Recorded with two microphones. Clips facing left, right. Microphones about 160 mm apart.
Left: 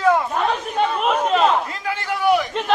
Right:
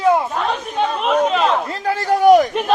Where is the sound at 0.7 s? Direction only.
Centre (ahead or behind).